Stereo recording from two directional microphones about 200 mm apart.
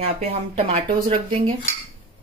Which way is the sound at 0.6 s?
35° right (ahead or behind).